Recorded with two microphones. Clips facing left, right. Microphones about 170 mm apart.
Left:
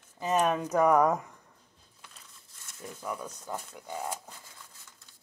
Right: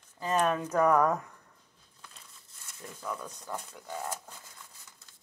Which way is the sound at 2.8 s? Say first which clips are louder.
Left 1 dB; 10° left (ahead or behind).